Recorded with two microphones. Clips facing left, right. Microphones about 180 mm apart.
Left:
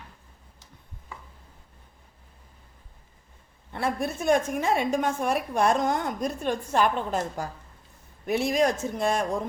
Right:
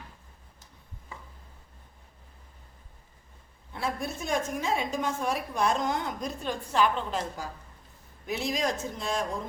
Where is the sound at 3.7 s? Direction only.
60° left (ahead or behind).